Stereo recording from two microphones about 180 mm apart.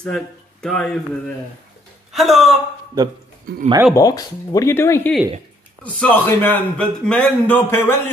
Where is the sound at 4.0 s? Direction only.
20° left (ahead or behind).